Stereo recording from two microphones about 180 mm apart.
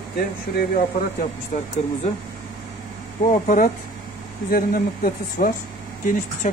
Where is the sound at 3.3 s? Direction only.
45° left (ahead or behind).